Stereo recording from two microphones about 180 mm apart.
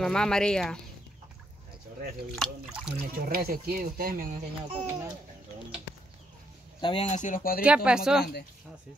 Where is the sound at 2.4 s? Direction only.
5° right (ahead or behind).